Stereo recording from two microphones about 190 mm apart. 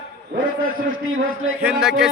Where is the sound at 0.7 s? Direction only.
90° right.